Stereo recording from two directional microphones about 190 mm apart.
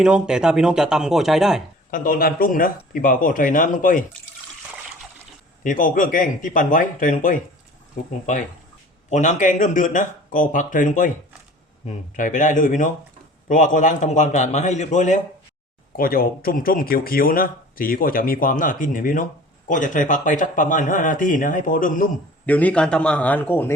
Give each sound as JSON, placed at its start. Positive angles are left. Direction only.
{"t": 0.0, "sound": "speech", "side_deg": -5}
{"t": 1.9, "sound": "speech", "side_deg": 50}
{"t": 5.6, "sound": "speech", "side_deg": 45}
{"t": 9.0, "sound": "speech", "side_deg": 40}
{"t": 12.1, "sound": "a man's voice", "side_deg": 45}
{"t": 22.4, "sound": "a man's voice", "side_deg": 10}